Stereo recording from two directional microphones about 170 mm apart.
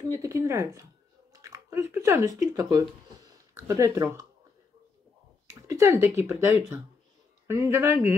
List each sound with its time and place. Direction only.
0.1 s speech: 20° right (ahead or behind)
5.5 s speech: 15° right (ahead or behind)